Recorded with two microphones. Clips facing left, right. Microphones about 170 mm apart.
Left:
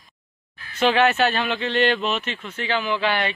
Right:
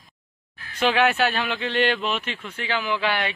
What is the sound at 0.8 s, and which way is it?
Speech, 10° right (ahead or behind).